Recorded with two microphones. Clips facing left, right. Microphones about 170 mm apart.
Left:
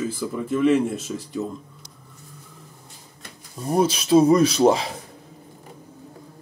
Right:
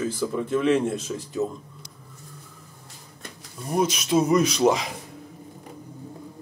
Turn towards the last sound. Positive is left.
turn(degrees=30)  # may be behind; listen again after turning